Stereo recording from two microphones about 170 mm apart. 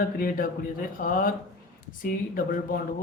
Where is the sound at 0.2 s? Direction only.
55° left (ahead or behind).